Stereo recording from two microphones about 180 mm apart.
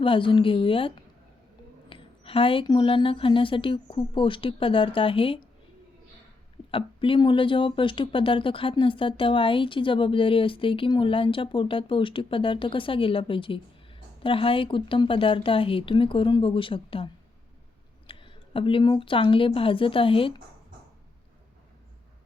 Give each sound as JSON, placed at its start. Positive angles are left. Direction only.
{"t": 0.0, "sound": "speech", "side_deg": 30}
{"t": 6.7, "sound": "speech", "side_deg": 30}